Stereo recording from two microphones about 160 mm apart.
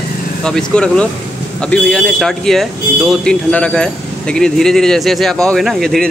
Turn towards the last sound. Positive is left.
turn(degrees=0)  # may be behind; listen again after turning